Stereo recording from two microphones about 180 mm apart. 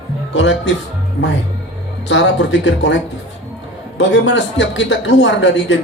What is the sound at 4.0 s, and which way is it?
Speech, 80° left.